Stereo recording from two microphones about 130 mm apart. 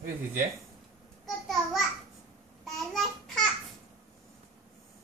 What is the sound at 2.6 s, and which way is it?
Babbling, centre (ahead or behind).